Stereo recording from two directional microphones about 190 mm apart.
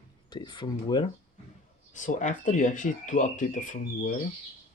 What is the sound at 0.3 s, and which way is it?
Speech, 25° left (ahead or behind).